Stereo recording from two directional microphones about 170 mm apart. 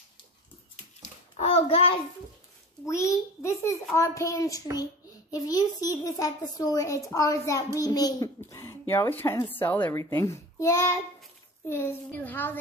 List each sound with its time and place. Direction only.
1.3 s a child's voice: 35° left (ahead or behind)
2.9 s a child's voice: 15° left (ahead or behind)